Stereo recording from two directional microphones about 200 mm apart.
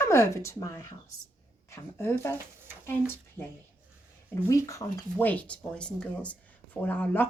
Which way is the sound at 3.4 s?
10° left (ahead or behind).